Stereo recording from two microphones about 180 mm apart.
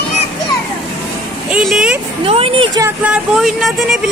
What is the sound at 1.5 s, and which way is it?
Speech, centre (ahead or behind).